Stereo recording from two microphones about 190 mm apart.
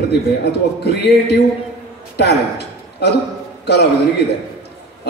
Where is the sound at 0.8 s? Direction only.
60° left (ahead or behind).